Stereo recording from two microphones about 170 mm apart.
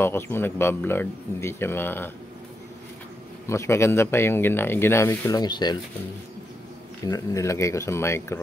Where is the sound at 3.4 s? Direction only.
15° left (ahead or behind).